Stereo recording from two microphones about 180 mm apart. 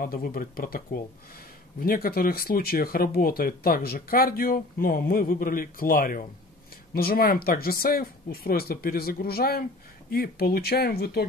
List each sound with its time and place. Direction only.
0.0 s speech: 50° left (ahead or behind)